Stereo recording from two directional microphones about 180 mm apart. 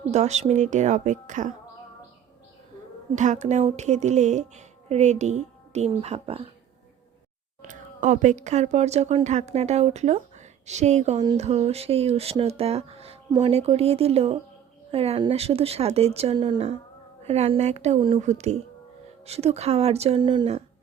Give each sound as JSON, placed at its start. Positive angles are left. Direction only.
{"t": 0.1, "sound": "speech", "side_deg": -40}
{"t": 3.2, "sound": "speech", "side_deg": -40}
{"t": 7.6, "sound": "a woman's voice", "side_deg": -45}